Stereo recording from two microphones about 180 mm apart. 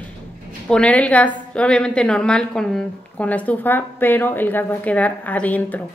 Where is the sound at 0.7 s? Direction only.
5° left (ahead or behind).